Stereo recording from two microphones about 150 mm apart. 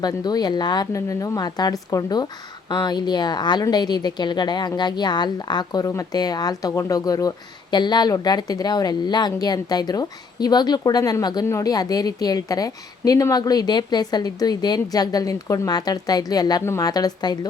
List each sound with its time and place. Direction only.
0.0 s speech: 25° left (ahead or behind)